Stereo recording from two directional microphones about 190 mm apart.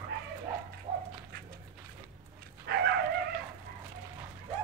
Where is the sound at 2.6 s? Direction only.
60° right (ahead or behind).